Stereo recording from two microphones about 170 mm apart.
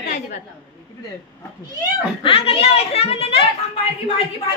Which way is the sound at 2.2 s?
35° left (ahead or behind).